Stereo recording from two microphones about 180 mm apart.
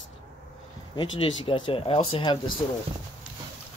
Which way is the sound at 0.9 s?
25° left (ahead or behind).